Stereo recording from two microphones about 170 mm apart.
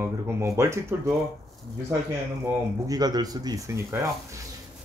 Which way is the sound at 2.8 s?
25° right (ahead or behind).